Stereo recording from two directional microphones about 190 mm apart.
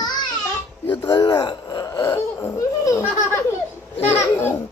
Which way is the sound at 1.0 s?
25° left (ahead or behind).